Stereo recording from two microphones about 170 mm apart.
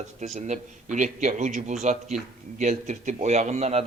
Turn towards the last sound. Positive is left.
turn(degrees=-40)  # may be behind; listen again after turning